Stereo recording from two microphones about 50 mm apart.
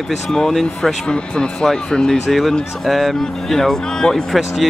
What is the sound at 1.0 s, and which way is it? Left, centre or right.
Speech, centre.